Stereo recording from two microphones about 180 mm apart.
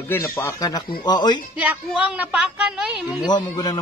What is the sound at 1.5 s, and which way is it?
A woman's voice, 10° right (ahead or behind).